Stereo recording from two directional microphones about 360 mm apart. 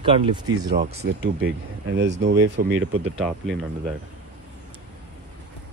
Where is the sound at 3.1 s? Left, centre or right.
Centre.